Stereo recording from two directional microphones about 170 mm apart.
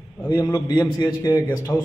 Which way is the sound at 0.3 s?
20° left (ahead or behind).